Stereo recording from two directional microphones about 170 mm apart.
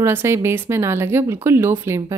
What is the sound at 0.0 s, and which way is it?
Speech, 15° right (ahead or behind).